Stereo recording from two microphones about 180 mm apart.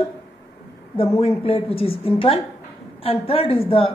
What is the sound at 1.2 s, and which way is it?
Speech, 30° left (ahead or behind).